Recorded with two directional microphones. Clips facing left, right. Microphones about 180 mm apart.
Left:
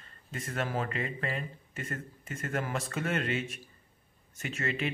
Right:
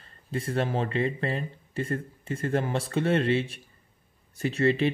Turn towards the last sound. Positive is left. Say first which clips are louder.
# right 10 dB
turn(degrees=-35)  # may be behind; listen again after turning